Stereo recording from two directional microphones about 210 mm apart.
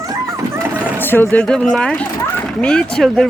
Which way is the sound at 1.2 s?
5° left (ahead or behind).